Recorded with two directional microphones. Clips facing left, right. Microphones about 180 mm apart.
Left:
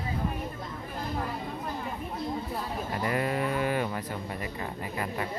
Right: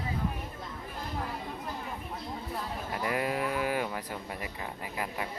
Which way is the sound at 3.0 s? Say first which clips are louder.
Left 2 dB; 5° right (ahead or behind).